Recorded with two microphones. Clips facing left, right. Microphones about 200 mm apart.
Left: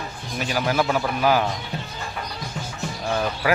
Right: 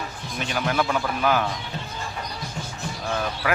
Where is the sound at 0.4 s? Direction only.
5° left (ahead or behind).